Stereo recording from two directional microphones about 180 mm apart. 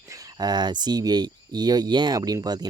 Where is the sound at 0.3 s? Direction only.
25° right (ahead or behind).